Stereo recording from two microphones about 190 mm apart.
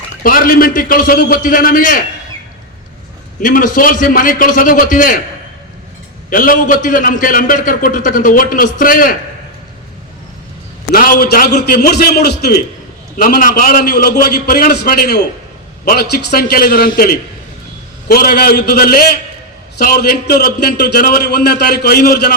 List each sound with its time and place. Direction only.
0.2 s a man's voice: 50° left (ahead or behind)
3.4 s a man's voice: 45° left (ahead or behind)
6.3 s a man's voice: 45° left (ahead or behind)
10.9 s a man's voice: 50° left (ahead or behind)